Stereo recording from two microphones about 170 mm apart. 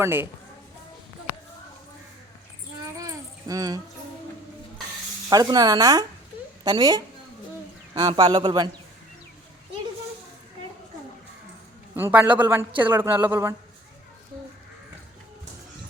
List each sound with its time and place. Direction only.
0.0 s a man's voice: 15° right (ahead or behind)
3.0 s a sound: 20° right (ahead or behind)
5.3 s speech: 20° right (ahead or behind)
11.9 s a man's voice: 10° right (ahead or behind)